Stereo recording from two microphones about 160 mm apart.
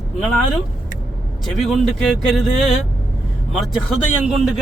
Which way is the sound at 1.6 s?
Centre (ahead or behind).